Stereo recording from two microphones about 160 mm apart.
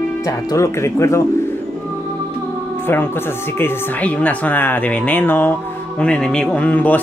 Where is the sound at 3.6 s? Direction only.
10° left (ahead or behind).